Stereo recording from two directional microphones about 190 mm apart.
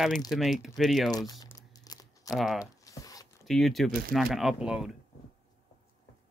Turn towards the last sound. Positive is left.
turn(degrees=-5)  # may be behind; listen again after turning